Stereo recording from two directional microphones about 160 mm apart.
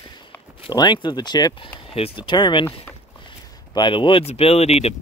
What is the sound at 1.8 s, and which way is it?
Speech, 35° left (ahead or behind).